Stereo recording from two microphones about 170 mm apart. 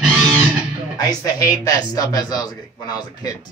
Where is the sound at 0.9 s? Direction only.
20° left (ahead or behind).